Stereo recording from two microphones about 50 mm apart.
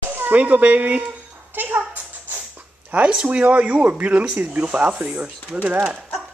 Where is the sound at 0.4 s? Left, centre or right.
Right.